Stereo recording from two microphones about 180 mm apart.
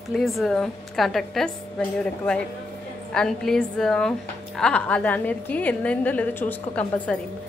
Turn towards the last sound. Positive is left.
turn(degrees=10)  # may be behind; listen again after turning